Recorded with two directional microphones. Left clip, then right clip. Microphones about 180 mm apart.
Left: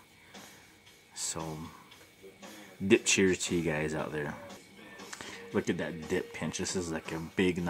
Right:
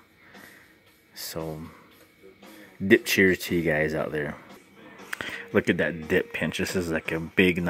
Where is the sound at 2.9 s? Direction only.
15° right (ahead or behind).